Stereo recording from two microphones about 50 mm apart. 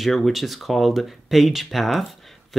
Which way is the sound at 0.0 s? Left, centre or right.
Centre.